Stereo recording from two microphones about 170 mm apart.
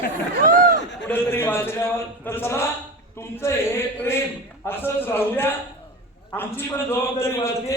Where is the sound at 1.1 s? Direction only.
10° left (ahead or behind).